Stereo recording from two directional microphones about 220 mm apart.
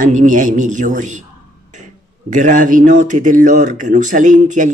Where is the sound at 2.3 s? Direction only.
35° right (ahead or behind).